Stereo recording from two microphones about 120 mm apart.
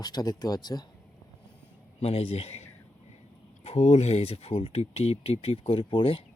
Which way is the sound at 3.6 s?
65° left (ahead or behind).